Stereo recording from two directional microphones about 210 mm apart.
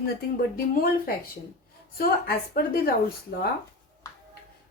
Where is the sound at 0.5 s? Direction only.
45° left (ahead or behind).